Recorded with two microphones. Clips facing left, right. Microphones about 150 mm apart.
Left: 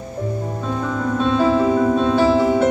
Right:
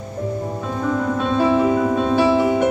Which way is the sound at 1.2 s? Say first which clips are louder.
Left 1 dB; 15° right (ahead or behind).